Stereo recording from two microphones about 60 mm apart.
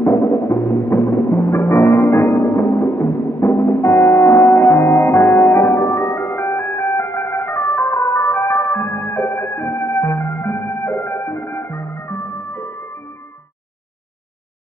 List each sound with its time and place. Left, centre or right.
0.0 s music: left